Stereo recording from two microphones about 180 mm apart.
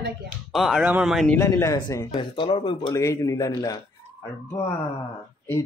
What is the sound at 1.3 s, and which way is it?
A man's voice, 15° left (ahead or behind).